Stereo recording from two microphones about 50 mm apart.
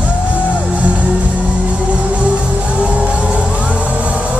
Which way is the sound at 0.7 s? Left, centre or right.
Right.